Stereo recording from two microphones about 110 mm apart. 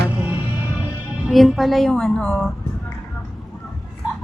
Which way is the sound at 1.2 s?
Centre (ahead or behind).